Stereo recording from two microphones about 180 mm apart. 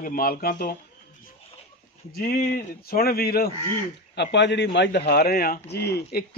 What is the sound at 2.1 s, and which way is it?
Speech, 55° left (ahead or behind).